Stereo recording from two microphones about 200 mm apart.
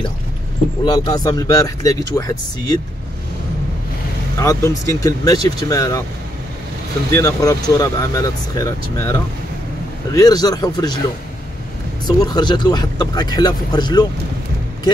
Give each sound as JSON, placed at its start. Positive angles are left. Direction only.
{"t": 0.8, "sound": "speech", "side_deg": 20}
{"t": 4.4, "sound": "speech", "side_deg": 15}
{"t": 7.2, "sound": "speech", "side_deg": 15}
{"t": 12.2, "sound": "speech", "side_deg": 20}